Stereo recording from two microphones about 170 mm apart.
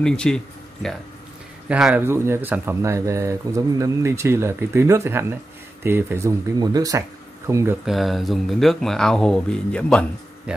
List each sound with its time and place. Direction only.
0.0 s speech: 5° left (ahead or behind)
1.7 s speech: 5° right (ahead or behind)
7.8 s speech: centre (ahead or behind)